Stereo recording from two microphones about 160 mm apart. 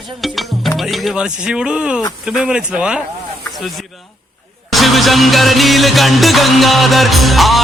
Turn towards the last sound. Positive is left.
turn(degrees=0)  # may be behind; listen again after turning